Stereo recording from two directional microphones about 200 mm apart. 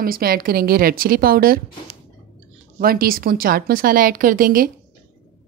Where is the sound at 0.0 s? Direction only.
50° right (ahead or behind).